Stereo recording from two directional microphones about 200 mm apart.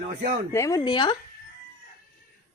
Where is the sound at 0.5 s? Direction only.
15° left (ahead or behind).